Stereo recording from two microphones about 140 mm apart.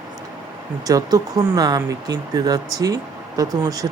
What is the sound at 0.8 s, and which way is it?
Speech, 25° right (ahead or behind).